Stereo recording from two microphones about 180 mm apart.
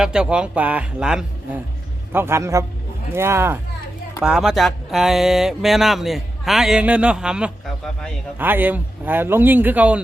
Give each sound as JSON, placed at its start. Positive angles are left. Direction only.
{"t": 0.0, "sound": "a man's voice", "side_deg": -5}
{"t": 4.2, "sound": "a man's voice", "side_deg": -5}